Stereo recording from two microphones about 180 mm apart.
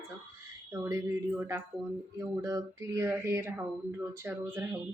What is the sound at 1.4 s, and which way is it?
Speech, 15° right (ahead or behind).